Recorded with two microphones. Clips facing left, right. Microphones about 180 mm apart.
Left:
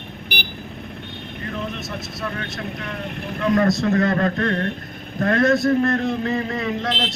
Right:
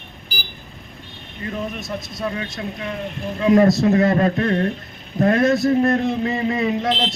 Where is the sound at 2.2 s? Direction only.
20° right (ahead or behind).